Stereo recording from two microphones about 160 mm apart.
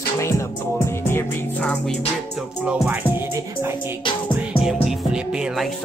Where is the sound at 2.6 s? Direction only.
5° right (ahead or behind).